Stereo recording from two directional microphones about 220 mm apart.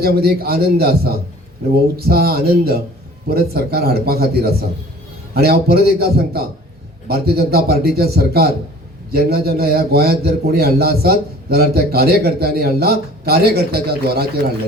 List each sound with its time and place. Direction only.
0.0 s a man's voice: 45° right (ahead or behind)
2.0 s a man's voice: 45° right (ahead or behind)